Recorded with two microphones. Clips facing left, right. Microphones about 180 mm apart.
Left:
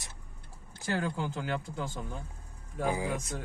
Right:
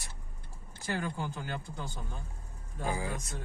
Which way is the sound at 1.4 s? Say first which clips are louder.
Left 5 dB; 85° left.